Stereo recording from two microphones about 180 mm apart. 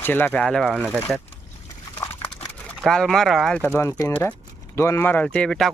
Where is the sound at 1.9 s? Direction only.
15° left (ahead or behind).